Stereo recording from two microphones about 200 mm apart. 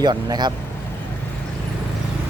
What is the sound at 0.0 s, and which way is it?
Speech, 20° right (ahead or behind).